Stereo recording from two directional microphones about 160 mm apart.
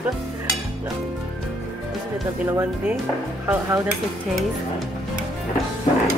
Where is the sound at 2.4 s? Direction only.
15° right (ahead or behind).